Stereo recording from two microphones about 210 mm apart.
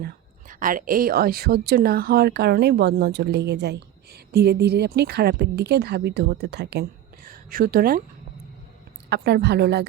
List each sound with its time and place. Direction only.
0.0 s a woman's voice: 40° right (ahead or behind)
9.0 s a woman's voice: 50° right (ahead or behind)